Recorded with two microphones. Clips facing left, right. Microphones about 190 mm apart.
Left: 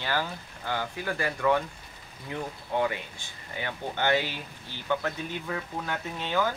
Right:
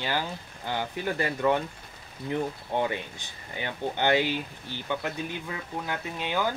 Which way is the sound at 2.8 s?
20° right (ahead or behind).